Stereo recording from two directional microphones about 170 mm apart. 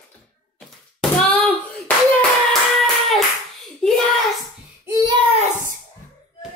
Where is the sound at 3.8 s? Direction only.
Centre (ahead or behind).